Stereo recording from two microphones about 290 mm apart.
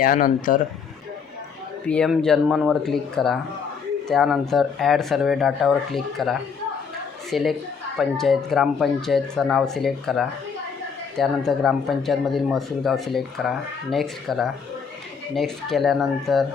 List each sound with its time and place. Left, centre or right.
0.0 s speech: left
1.8 s a woman's voice: centre